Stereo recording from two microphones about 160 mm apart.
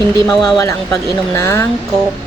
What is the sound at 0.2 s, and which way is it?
Speech, 20° left (ahead or behind).